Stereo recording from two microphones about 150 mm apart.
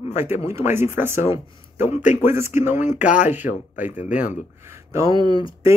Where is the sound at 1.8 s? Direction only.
50° left (ahead or behind).